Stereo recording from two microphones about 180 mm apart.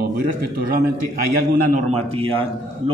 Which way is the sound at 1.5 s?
40° right (ahead or behind).